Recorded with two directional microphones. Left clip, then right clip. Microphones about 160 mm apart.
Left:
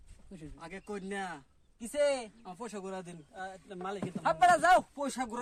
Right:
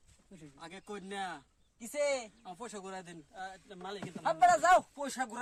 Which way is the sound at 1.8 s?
20° right (ahead or behind).